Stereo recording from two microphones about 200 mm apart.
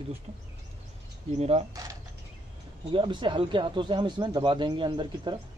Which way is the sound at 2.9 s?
25° right (ahead or behind).